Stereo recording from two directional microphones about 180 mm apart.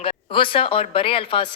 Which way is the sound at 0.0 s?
30° left (ahead or behind).